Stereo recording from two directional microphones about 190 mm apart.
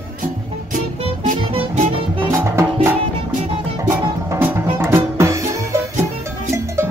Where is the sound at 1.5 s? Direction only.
30° right (ahead or behind).